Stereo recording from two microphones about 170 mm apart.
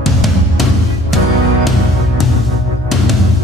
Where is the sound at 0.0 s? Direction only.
Centre (ahead or behind).